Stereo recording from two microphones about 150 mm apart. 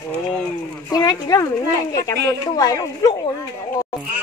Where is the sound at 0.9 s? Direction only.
25° left (ahead or behind).